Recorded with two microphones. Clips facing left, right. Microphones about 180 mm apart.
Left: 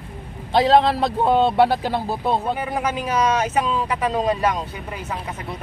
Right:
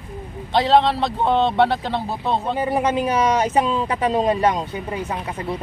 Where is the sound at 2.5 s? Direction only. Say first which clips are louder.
Right 4 dB; 30° right (ahead or behind).